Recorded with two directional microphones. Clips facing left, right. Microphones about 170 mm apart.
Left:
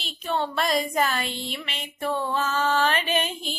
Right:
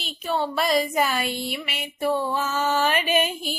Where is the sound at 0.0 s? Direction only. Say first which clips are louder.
Right 2 dB; 5° right (ahead or behind).